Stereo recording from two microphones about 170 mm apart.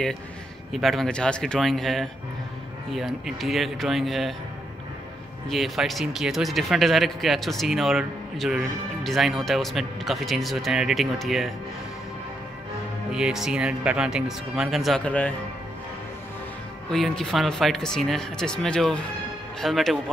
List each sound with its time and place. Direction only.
0.7 s speech: centre (ahead or behind)
5.5 s speech: centre (ahead or behind)
13.1 s speech: 5° right (ahead or behind)
16.9 s speech: centre (ahead or behind)